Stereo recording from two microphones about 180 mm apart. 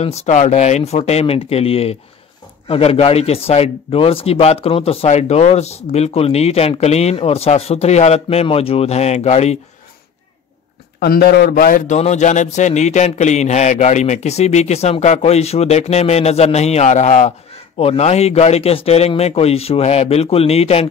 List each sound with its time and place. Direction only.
0.0 s speech: 35° left (ahead or behind)
11.0 s speech: 60° left (ahead or behind); by 20.9 s 35° left (ahead or behind)